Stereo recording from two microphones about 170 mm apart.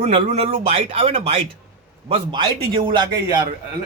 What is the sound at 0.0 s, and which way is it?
A man's voice, 35° right (ahead or behind).